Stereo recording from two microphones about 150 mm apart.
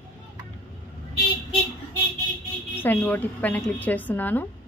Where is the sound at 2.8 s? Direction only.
15° left (ahead or behind).